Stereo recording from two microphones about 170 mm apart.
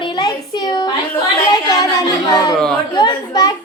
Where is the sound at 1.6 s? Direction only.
20° left (ahead or behind).